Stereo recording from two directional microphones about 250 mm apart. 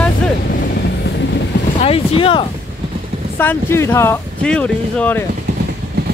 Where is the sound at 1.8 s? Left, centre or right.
Left.